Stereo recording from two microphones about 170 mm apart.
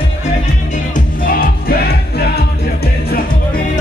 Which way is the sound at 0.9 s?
55° left (ahead or behind).